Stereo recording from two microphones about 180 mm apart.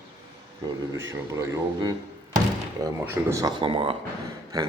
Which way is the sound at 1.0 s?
15° right (ahead or behind).